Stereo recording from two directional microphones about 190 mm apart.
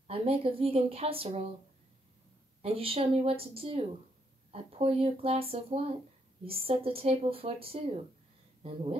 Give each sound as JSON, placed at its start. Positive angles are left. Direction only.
{"t": 0.0, "sound": "speech", "side_deg": -30}
{"t": 2.6, "sound": "speech", "side_deg": -30}